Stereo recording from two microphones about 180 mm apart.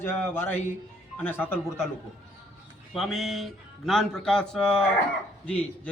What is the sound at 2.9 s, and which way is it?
A man's voice, centre (ahead or behind).